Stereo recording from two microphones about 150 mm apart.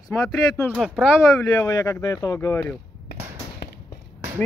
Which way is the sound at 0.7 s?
Centre (ahead or behind).